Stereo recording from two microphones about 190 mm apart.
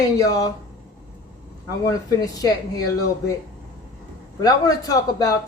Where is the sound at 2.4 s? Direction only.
20° left (ahead or behind).